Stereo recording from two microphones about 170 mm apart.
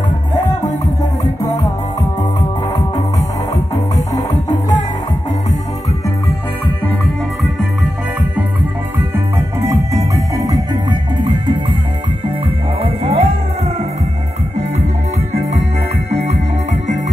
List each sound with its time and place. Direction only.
1.2 s music: 20° left (ahead or behind)
3.9 s music: 20° left (ahead or behind)
9.7 s music: 20° right (ahead or behind)
12.8 s music: 35° right (ahead or behind)
16.1 s music: 40° right (ahead or behind)